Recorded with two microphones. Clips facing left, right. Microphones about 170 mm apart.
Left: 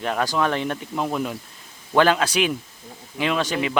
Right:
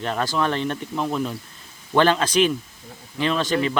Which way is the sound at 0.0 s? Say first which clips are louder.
Left 1 dB; 10° left (ahead or behind).